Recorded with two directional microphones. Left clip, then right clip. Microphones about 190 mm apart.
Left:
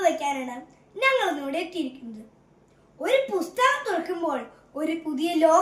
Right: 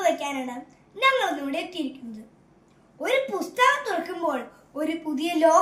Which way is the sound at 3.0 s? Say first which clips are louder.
Left 1 dB; 15° left (ahead or behind).